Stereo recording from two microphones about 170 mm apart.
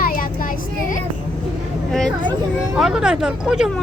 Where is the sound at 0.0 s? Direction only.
55° left (ahead or behind).